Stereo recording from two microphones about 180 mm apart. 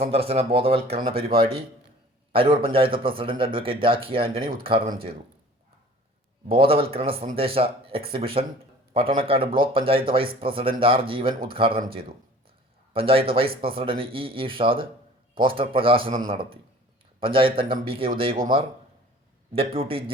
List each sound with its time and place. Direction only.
0.1 s speech: 35° right (ahead or behind)
1.1 s speech: 55° right (ahead or behind)
2.3 s a man's voice: 30° right (ahead or behind)
6.7 s speech: 30° right (ahead or behind)
19.5 s speech: 30° right (ahead or behind)